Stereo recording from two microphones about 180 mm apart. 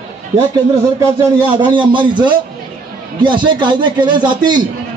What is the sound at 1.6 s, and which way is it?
A man's voice, 25° right (ahead or behind).